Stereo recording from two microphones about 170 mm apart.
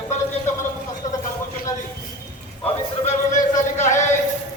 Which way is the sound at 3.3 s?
45° left (ahead or behind).